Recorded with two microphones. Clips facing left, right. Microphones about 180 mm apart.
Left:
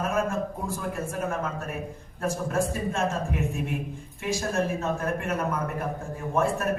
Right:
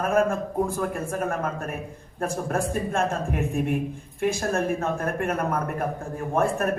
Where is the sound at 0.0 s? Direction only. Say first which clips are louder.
Right 5 dB; 55° right (ahead or behind).